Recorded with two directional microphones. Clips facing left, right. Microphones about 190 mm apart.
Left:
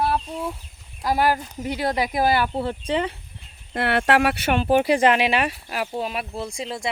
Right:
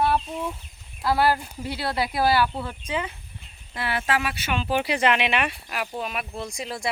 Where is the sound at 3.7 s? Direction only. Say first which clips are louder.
Left 6 dB; 60° left (ahead or behind).